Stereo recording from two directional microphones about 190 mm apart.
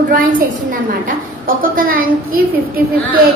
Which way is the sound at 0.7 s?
45° right (ahead or behind).